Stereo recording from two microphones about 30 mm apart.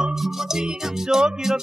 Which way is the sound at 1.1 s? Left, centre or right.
Right.